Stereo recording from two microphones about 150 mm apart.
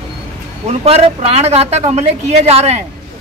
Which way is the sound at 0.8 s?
40° right (ahead or behind).